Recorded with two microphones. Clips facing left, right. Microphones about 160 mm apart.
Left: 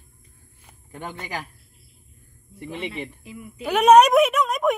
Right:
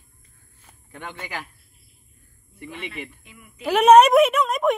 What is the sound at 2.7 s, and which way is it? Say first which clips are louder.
Speech: left 4 dB; 25° left (ahead or behind).